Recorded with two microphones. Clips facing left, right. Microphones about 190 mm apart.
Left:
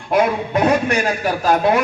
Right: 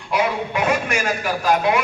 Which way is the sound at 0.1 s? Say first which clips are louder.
Left 5 dB; 45° left (ahead or behind).